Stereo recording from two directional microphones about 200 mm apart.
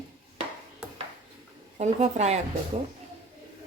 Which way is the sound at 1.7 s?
35° right (ahead or behind).